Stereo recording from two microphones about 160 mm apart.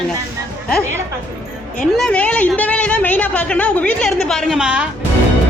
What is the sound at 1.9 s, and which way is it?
A woman's voice, 5° left (ahead or behind).